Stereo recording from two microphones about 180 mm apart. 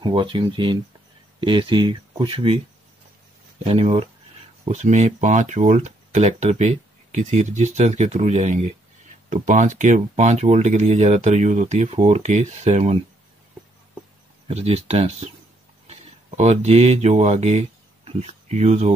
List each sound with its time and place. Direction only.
0.0 s speech: 25° right (ahead or behind)
3.6 s speech: 35° right (ahead or behind)
14.5 s speech: 35° right (ahead or behind)